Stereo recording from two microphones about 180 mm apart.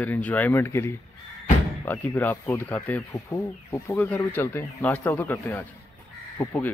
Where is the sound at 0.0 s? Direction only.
10° left (ahead or behind).